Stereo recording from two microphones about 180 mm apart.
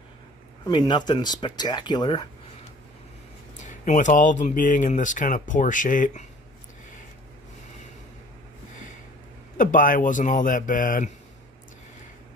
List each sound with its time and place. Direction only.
0.7 s speech: 25° left (ahead or behind)
3.8 s speech: 45° left (ahead or behind)
9.6 s speech: 45° left (ahead or behind)